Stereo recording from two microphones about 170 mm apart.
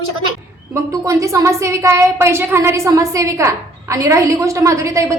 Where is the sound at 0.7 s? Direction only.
20° right (ahead or behind).